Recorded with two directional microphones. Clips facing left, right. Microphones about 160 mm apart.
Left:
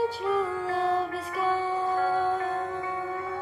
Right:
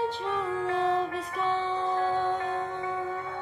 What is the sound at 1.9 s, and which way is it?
Music, 40° left (ahead or behind).